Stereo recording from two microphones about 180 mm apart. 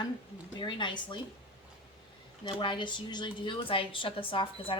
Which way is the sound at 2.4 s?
25° left (ahead or behind).